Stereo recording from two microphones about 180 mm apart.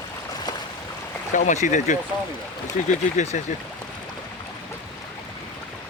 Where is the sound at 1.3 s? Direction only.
40° left (ahead or behind).